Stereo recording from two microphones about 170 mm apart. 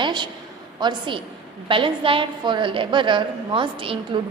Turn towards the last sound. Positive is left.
turn(degrees=-30)  # may be behind; listen again after turning